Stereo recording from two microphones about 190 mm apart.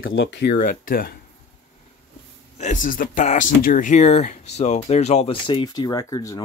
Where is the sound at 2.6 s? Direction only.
40° left (ahead or behind).